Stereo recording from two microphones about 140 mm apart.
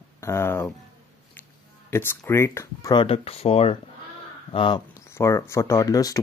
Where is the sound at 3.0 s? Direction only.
45° left (ahead or behind).